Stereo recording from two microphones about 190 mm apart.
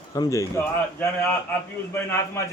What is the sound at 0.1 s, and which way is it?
A man's voice, 15° left (ahead or behind).